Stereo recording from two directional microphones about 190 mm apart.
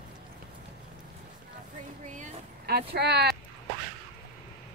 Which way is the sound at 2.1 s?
50° right (ahead or behind).